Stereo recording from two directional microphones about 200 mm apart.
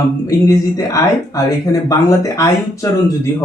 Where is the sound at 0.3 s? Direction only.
15° left (ahead or behind).